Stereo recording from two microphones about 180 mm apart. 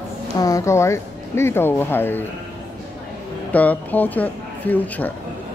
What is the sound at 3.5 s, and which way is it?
Speech, 10° left (ahead or behind).